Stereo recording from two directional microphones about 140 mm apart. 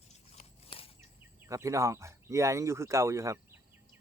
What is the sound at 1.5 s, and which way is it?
Speech, 20° right (ahead or behind).